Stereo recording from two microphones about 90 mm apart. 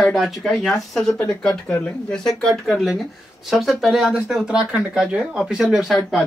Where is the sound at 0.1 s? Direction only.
Centre (ahead or behind).